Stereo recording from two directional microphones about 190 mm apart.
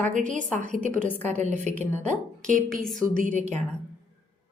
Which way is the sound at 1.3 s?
40° right (ahead or behind).